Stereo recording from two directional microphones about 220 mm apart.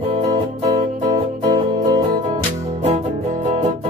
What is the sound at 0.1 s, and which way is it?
Music, 20° right (ahead or behind).